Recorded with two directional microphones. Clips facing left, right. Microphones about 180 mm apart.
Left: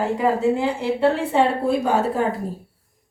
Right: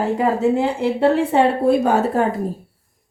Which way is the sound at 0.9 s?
55° right (ahead or behind).